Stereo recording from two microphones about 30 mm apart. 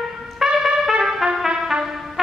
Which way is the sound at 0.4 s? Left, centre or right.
Centre.